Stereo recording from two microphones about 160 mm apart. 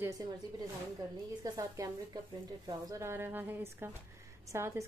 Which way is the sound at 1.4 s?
25° right (ahead or behind).